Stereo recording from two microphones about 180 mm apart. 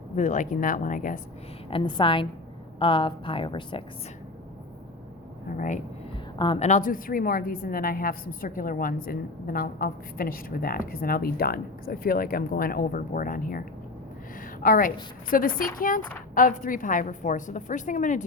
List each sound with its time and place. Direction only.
0.2 s a woman's voice: 45° left (ahead or behind)
1.7 s a woman's voice: 30° left (ahead or behind)
5.5 s a woman's voice: 45° left (ahead or behind)
6.4 s a woman's voice: 30° left (ahead or behind)
6.7 s a woman's voice: 45° left (ahead or behind)